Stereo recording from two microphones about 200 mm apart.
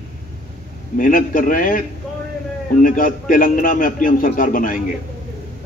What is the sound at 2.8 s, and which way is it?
A man's voice, 45° left (ahead or behind).